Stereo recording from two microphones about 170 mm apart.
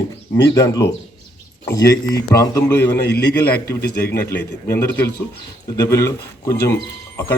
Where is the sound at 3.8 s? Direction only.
70° left (ahead or behind).